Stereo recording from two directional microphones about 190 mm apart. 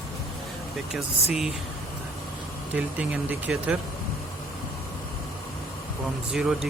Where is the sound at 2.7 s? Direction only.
5° right (ahead or behind).